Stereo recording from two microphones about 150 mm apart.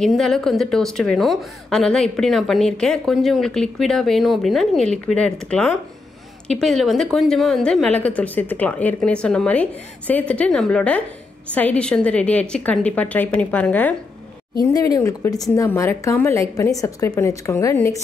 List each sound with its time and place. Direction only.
0.0 s a woman's voice: centre (ahead or behind)
14.6 s a woman's voice: 25° left (ahead or behind)